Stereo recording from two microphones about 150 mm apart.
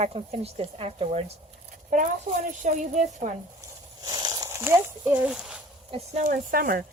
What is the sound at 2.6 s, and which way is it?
Speech, 55° right (ahead or behind).